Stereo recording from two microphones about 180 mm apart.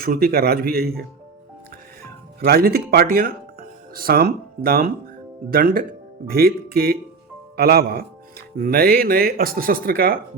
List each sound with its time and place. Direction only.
0.0 s speech: 55° right (ahead or behind)
2.4 s speech: 60° right (ahead or behind)